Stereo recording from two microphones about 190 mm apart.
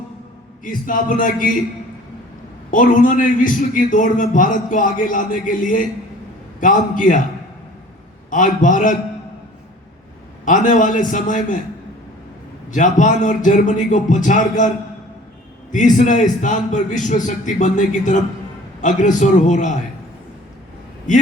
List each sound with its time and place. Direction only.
0.6 s a man's voice: 45° left (ahead or behind)
2.6 s a man's voice: 45° left (ahead or behind)
8.3 s a man's voice: 40° left (ahead or behind)
10.4 s a man's voice: 40° left (ahead or behind)
12.7 s a man's voice: 40° left (ahead or behind)
15.7 s a man's voice: 40° left (ahead or behind)